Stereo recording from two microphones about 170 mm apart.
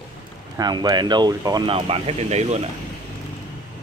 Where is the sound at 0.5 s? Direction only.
25° right (ahead or behind); by 2.7 s 40° right (ahead or behind).